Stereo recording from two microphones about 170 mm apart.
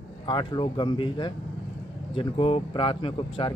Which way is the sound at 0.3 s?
25° left (ahead or behind).